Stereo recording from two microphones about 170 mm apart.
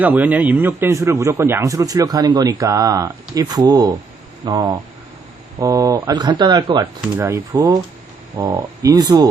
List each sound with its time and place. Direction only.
0.0 s speech: 10° right (ahead or behind); by 6.8 s 25° right (ahead or behind)
7.2 s speech: 15° right (ahead or behind)